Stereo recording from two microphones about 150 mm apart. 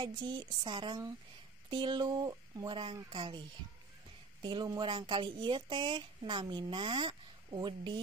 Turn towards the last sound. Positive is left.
turn(degrees=-35)  # may be behind; listen again after turning